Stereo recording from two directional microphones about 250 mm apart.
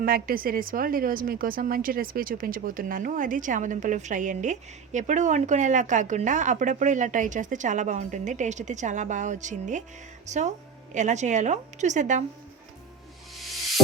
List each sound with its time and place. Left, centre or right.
0.0 s a woman's voice: right